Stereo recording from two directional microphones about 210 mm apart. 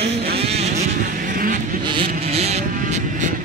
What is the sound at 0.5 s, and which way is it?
Vehicle, 30° right (ahead or behind).